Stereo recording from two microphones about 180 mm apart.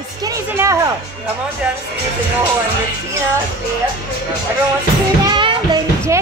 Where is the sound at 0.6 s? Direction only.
15° right (ahead or behind).